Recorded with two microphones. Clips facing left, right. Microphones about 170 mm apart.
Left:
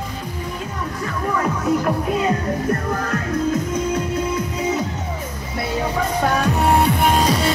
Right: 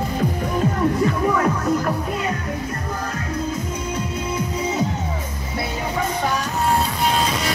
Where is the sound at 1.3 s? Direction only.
Centre (ahead or behind).